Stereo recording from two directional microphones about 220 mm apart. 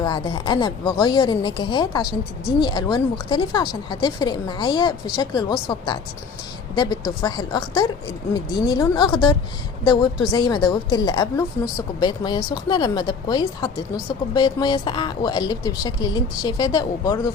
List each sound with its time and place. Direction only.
0.0 s speech: 20° left (ahead or behind)